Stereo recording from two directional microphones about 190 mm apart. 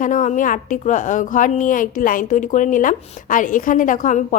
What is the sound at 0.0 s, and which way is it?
A woman's voice, 40° left (ahead or behind).